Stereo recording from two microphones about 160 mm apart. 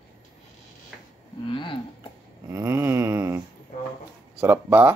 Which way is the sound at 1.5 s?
30° left (ahead or behind).